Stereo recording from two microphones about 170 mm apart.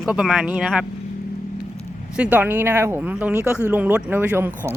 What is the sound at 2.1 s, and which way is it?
Speech, 10° right (ahead or behind).